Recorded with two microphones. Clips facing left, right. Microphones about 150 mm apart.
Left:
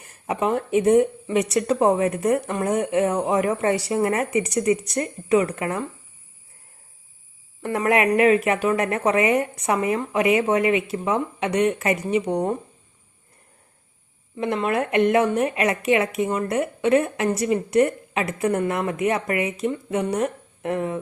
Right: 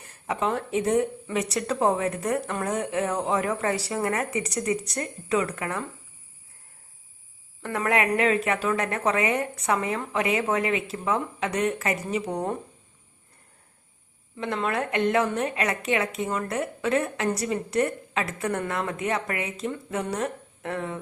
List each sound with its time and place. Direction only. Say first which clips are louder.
0.3 s a woman's voice: left 4 dB; 20° left (ahead or behind)
7.6 s a woman's voice: left 5 dB; 20° left (ahead or behind)
14.3 s a woman's voice: left 5 dB; 15° left (ahead or behind)